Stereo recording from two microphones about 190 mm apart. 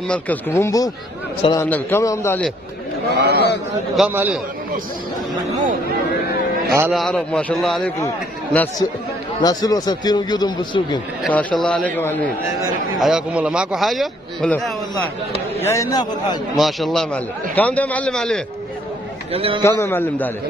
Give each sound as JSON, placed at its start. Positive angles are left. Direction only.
{"t": 0.1, "sound": "a man's voice", "side_deg": 10}
{"t": 3.2, "sound": "a man's voice", "side_deg": -55}
{"t": 3.9, "sound": "a man's voice", "side_deg": -5}
{"t": 6.9, "sound": "a man's voice", "side_deg": 0}
{"t": 9.4, "sound": "a man's voice", "side_deg": 20}
{"t": 11.2, "sound": "a man's voice", "side_deg": 5}
{"t": 13.0, "sound": "a man's voice", "side_deg": -5}
{"t": 15.6, "sound": "a man's voice", "side_deg": 15}
{"t": 16.5, "sound": "a man's voice", "side_deg": 0}
{"t": 19.3, "sound": "a man's voice", "side_deg": -30}
{"t": 19.6, "sound": "a man's voice", "side_deg": 10}